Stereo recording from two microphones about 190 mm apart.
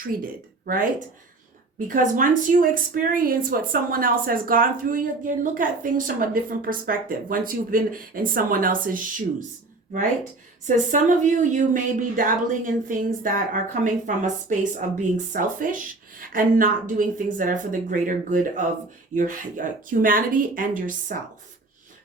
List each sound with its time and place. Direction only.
0.0 s speech: 45° right (ahead or behind)
10.9 s speech: 40° right (ahead or behind)